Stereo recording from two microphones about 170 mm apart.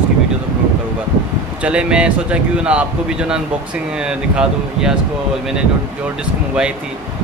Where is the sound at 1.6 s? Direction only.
5° right (ahead or behind).